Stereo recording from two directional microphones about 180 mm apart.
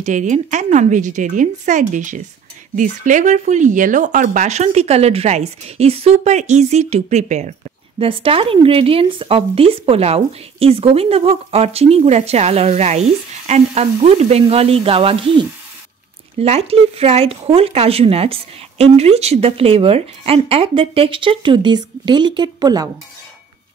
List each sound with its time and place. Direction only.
0.0 s speech: 45° right (ahead or behind); by 22.8 s 20° right (ahead or behind)